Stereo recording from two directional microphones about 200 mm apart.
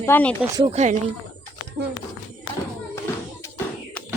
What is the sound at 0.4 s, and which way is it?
Speech, 15° right (ahead or behind).